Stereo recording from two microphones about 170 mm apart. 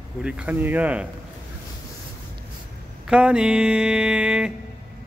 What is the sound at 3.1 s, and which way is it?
Speech, 5° right (ahead or behind).